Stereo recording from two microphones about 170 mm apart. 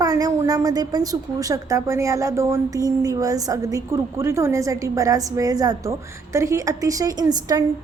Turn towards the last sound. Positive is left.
turn(degrees=-25)  # may be behind; listen again after turning